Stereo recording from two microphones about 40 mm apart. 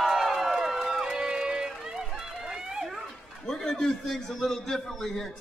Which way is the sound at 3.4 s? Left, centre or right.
Centre.